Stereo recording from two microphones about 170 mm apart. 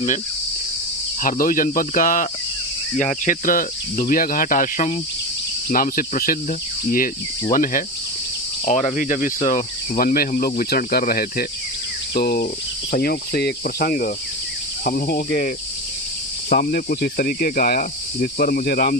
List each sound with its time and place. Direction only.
1.2 s cricket: 50° left (ahead or behind)
5.6 s speech: 55° left (ahead or behind)
7.5 s cricket: 55° left (ahead or behind)
12.9 s speech: 65° left (ahead or behind)